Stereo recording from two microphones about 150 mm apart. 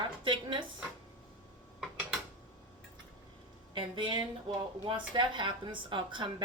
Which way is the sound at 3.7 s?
30° right (ahead or behind).